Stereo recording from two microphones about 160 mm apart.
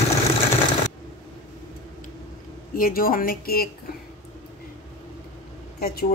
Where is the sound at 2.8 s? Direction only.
65° left (ahead or behind).